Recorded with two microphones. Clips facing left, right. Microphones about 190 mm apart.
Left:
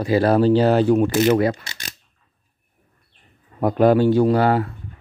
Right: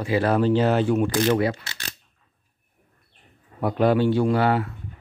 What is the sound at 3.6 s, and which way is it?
Speech, 45° left (ahead or behind).